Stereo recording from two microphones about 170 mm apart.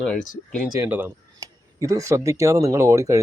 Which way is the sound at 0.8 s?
10° right (ahead or behind).